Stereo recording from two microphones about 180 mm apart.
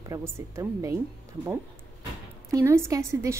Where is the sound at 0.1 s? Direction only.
15° right (ahead or behind).